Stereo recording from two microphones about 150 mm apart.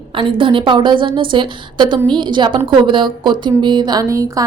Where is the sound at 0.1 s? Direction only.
35° right (ahead or behind).